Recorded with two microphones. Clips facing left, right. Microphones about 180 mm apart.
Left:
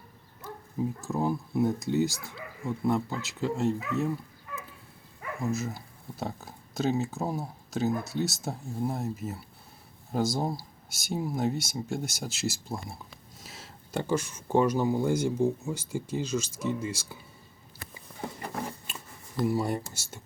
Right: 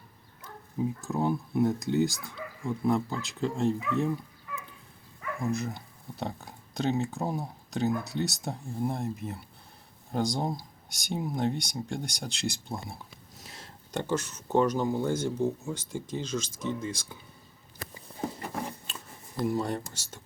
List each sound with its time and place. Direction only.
0.4 s speech: centre (ahead or behind)
5.4 s speech: centre (ahead or behind)
18.9 s a sound: 10° left (ahead or behind)
19.5 s speech: 10° left (ahead or behind)